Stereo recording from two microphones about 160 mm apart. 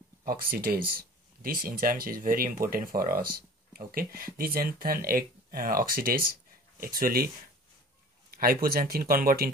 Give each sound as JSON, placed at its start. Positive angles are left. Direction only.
{"t": 0.2, "sound": "speech", "side_deg": -65}
{"t": 8.3, "sound": "speech", "side_deg": -70}